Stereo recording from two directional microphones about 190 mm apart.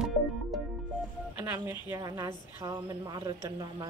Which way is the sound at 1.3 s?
10° right (ahead or behind).